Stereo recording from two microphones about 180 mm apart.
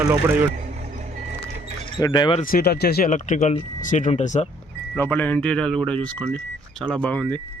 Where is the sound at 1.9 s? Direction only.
25° left (ahead or behind).